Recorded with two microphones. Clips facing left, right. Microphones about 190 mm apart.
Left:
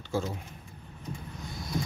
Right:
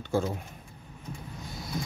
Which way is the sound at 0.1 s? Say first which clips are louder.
Right 3 dB; 55° right (ahead or behind).